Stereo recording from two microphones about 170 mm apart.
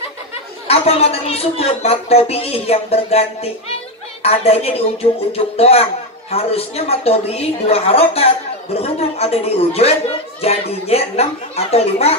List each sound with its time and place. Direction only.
0.7 s speech: 35° left (ahead or behind)